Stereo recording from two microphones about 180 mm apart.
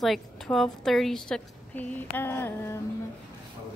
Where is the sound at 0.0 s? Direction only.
Centre (ahead or behind).